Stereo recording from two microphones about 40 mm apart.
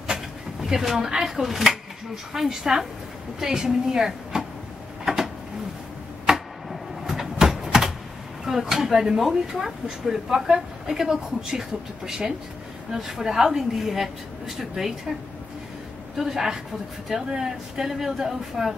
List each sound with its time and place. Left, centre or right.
0.0 s speech: centre
5.0 s a sound: centre
8.5 s speech: centre
16.2 s speech: centre